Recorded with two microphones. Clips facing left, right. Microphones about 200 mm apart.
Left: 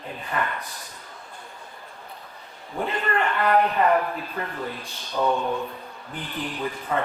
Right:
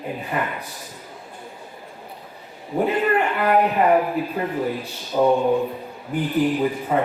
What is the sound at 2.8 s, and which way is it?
A man's voice, 10° right (ahead or behind).